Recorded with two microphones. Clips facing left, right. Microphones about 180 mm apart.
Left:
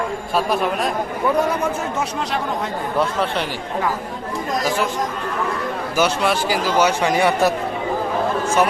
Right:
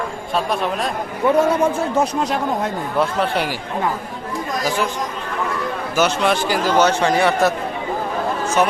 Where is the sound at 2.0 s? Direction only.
45° right (ahead or behind).